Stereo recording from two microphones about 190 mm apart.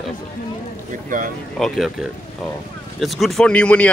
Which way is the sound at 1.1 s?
45° right (ahead or behind).